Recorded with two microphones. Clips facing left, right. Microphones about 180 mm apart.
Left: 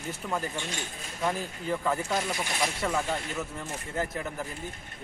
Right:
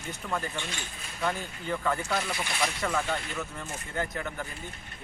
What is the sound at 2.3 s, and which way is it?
Speech, 40° left (ahead or behind).